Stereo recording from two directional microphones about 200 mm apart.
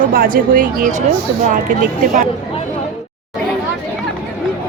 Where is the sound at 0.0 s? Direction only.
45° right (ahead or behind).